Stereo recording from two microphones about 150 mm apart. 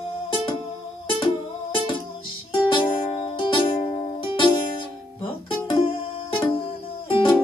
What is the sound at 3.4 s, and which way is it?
Music, 35° left (ahead or behind).